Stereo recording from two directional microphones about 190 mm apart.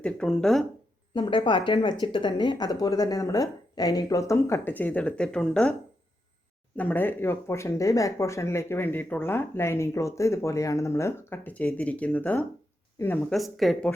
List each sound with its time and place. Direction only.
0.0 s speech: 5° left (ahead or behind)
1.1 s speech: 25° left (ahead or behind); by 5.7 s 5° left (ahead or behind)
6.7 s speech: 10° left (ahead or behind)